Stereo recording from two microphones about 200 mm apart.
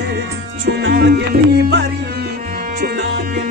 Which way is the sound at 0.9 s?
60° right (ahead or behind).